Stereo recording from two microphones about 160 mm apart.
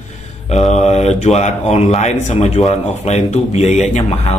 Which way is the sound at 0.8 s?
45° left (ahead or behind).